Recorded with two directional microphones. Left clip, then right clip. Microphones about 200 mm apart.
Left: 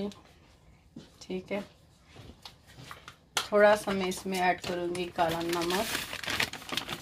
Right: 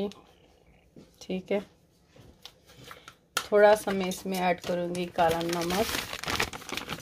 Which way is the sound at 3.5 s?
45° right (ahead or behind).